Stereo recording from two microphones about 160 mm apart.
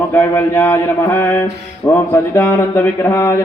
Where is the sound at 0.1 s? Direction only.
15° left (ahead or behind).